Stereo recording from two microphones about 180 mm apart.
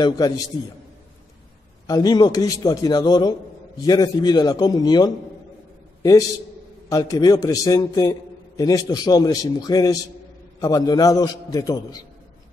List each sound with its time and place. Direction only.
0.0 s a man's voice: 20° left (ahead or behind)
1.9 s a man's voice: 20° left (ahead or behind)
6.9 s a man's voice: 20° left (ahead or behind)